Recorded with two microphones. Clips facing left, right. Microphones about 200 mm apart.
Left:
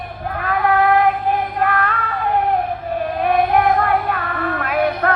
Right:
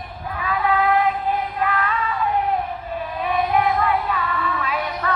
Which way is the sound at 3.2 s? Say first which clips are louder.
Left 4 dB; 60° left (ahead or behind).